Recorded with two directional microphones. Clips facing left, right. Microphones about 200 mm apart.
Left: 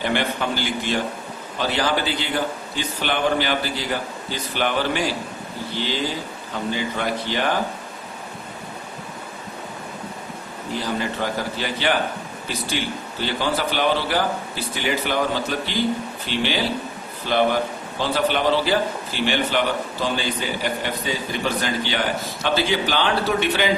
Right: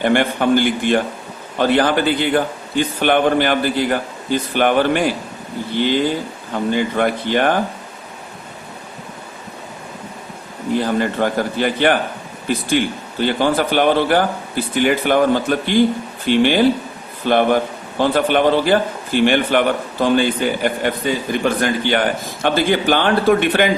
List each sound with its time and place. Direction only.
0.0 s a man's voice: 50° right (ahead or behind)
6.5 s a man's voice: 50° right (ahead or behind)
10.8 s a man's voice: 55° right (ahead or behind)